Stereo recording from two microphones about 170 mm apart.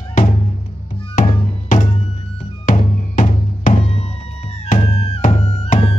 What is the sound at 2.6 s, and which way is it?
Music, 50° left (ahead or behind).